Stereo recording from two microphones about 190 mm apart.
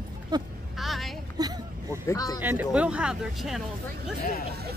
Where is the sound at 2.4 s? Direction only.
10° right (ahead or behind).